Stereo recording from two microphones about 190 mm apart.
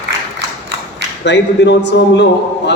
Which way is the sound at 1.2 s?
65° left (ahead or behind).